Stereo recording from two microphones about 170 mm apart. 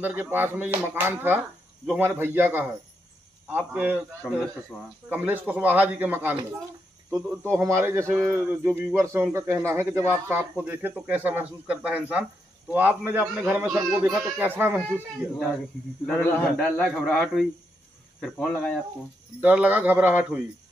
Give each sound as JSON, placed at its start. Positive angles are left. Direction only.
{"t": 0.0, "sound": "speech", "side_deg": -10}
{"t": 4.2, "sound": "a man's voice", "side_deg": 5}
{"t": 5.1, "sound": "speech", "side_deg": -10}
{"t": 7.4, "sound": "speech", "side_deg": -15}
{"t": 16.1, "sound": "a man's voice", "side_deg": 10}
{"t": 19.4, "sound": "speech", "side_deg": -10}